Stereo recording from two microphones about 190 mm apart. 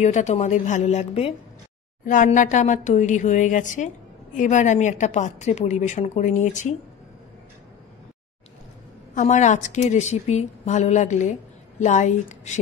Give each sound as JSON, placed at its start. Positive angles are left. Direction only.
{"t": 0.0, "sound": "a woman's voice", "side_deg": 40}
{"t": 9.1, "sound": "a woman's voice", "side_deg": 40}